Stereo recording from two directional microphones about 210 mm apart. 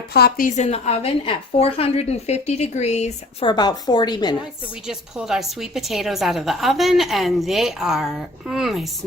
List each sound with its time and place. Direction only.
0.1 s a woman's voice: 50° left (ahead or behind); by 3.5 s 30° left (ahead or behind)
3.5 s a woman's voice: 20° left (ahead or behind)
4.9 s a woman's voice: 5° right (ahead or behind)